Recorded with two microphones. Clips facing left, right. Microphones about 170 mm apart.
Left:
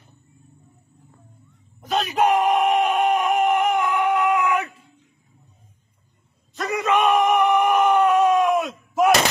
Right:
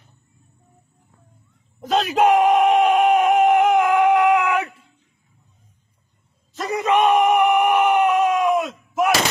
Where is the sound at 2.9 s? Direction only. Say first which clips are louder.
Right 4 dB; 90° right; by 4.7 s 70° right (ahead or behind).